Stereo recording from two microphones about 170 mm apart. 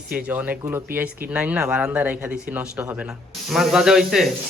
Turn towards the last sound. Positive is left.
turn(degrees=0)  # may be behind; listen again after turning